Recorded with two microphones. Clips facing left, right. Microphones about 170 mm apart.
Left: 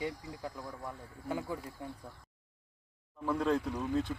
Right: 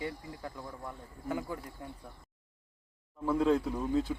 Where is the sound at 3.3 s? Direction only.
5° right (ahead or behind).